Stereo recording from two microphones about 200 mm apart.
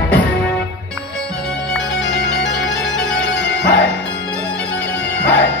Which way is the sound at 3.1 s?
60° left (ahead or behind).